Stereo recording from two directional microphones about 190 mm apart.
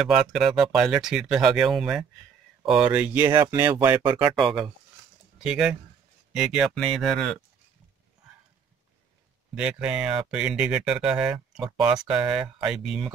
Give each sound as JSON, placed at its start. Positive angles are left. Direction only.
{"t": 0.0, "sound": "speech", "side_deg": 0}
{"t": 9.6, "sound": "speech", "side_deg": -5}